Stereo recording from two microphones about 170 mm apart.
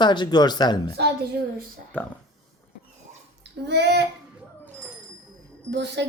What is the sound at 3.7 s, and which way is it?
Speech, 80° right.